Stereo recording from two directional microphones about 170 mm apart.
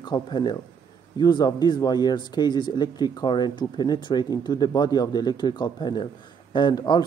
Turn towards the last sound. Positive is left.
turn(degrees=25)  # may be behind; listen again after turning